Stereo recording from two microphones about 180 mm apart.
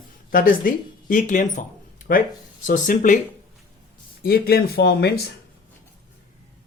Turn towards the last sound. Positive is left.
turn(degrees=60)  # may be behind; listen again after turning